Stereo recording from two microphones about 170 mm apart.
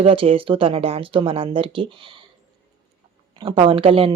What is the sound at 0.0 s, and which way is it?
Speech, 35° right (ahead or behind).